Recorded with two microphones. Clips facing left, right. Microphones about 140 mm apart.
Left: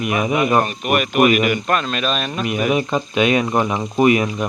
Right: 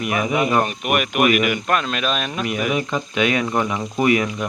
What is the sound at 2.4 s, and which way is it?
Speech, 20° left (ahead or behind).